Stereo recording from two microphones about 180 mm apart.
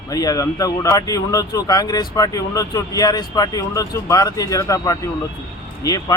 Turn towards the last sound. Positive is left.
turn(degrees=20)  # may be behind; listen again after turning